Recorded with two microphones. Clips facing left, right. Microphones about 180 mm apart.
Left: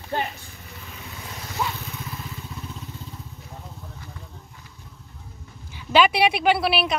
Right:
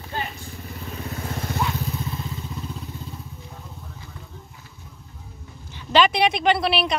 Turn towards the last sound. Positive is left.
turn(degrees=5)  # may be behind; listen again after turning